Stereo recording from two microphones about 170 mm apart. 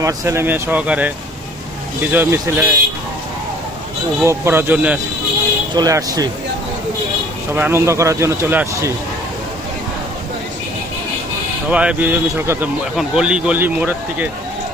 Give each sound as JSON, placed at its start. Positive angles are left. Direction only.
{"t": 0.0, "sound": "speech", "side_deg": -20}
{"t": 2.1, "sound": "speech", "side_deg": -10}
{"t": 4.2, "sound": "speech", "side_deg": -15}
{"t": 5.7, "sound": "speech", "side_deg": -20}
{"t": 7.5, "sound": "speech", "side_deg": -15}
{"t": 11.7, "sound": "speech", "side_deg": -5}